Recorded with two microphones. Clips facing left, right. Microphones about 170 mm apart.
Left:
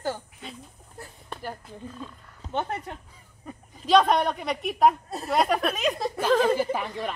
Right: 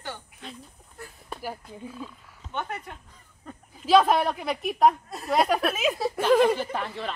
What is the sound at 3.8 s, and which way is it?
A woman's voice, 5° right (ahead or behind).